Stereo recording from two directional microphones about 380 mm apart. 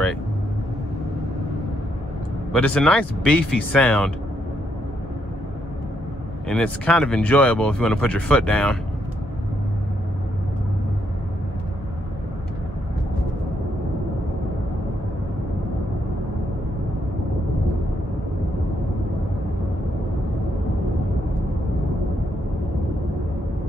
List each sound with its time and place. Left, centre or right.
2.5 s speech: centre
6.5 s speech: centre